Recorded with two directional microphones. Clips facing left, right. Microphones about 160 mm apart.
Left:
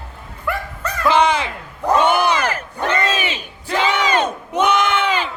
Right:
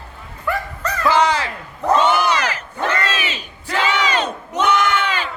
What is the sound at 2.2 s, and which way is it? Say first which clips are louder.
Battle cry: left 1 dB; 55° left (ahead or behind).